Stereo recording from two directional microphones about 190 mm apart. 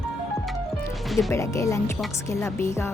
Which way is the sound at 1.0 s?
Centre (ahead or behind).